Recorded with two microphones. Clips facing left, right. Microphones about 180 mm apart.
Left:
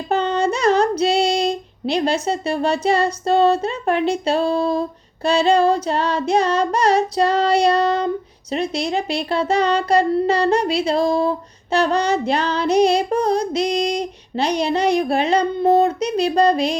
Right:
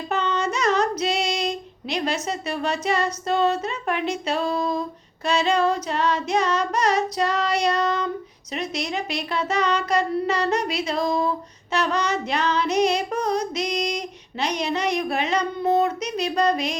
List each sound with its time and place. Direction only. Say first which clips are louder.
0.1 s female singing: left 6 dB; 35° left (ahead or behind)